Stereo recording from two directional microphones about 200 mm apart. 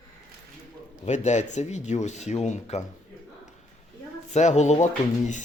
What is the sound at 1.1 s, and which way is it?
Speech, 35° left (ahead or behind).